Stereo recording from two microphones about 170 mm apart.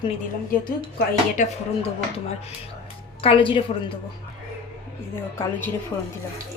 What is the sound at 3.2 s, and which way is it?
Speech, 30° left (ahead or behind).